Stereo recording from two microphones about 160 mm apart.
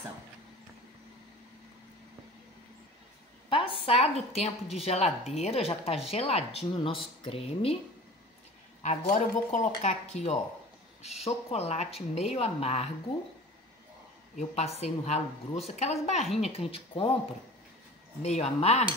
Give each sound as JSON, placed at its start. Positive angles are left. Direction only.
{"t": 3.4, "sound": "a woman's voice", "side_deg": 35}
{"t": 8.8, "sound": "a woman's voice", "side_deg": 50}
{"t": 14.5, "sound": "a woman's voice", "side_deg": 40}